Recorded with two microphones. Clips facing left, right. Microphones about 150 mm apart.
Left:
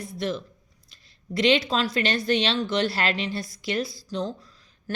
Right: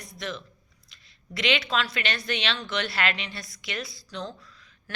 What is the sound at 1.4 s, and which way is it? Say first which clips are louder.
A woman's voice: left 5 dB; 40° left (ahead or behind).